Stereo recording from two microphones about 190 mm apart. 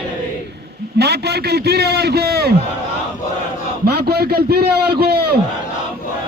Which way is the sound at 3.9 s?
55° right (ahead or behind).